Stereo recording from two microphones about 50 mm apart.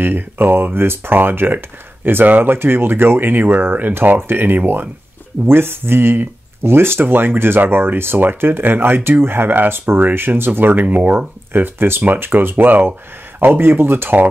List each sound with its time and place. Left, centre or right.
0.0 s speech: right